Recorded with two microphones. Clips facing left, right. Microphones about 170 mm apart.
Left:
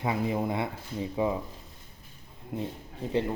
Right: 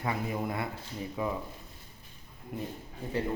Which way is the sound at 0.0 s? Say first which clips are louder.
Left 4 dB; 20° left (ahead or behind).